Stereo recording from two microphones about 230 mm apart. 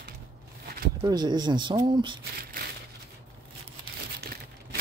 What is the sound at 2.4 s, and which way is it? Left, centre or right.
Crumpling, right.